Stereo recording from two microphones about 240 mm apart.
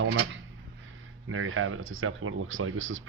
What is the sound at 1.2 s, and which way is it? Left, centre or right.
Speech, right.